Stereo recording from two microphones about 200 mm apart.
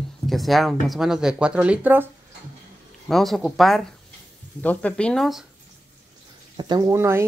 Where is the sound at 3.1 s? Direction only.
Centre (ahead or behind).